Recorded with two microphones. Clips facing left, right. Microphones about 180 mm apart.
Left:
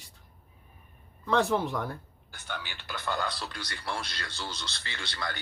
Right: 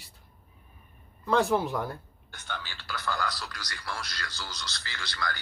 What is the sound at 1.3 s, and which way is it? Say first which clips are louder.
Speech: right 1 dB; centre (ahead or behind).